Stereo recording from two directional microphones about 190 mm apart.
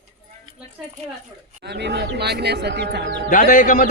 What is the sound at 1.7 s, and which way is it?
Speech, 65° right (ahead or behind).